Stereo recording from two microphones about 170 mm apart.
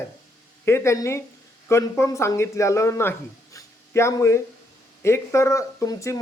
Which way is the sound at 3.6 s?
15° left (ahead or behind).